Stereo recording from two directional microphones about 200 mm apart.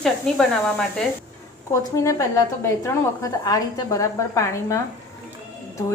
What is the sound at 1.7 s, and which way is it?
A woman's voice, 15° left (ahead or behind).